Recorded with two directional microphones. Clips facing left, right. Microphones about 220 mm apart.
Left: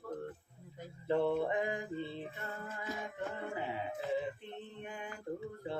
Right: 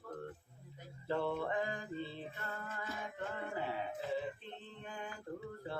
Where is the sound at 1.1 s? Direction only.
20° left (ahead or behind).